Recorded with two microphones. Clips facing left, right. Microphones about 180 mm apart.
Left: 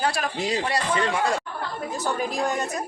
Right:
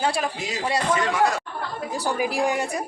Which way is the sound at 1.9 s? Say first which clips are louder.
Right 3 dB; 15° right (ahead or behind).